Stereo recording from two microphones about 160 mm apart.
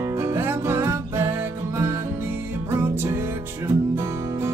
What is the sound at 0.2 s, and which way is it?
Music, 15° right (ahead or behind).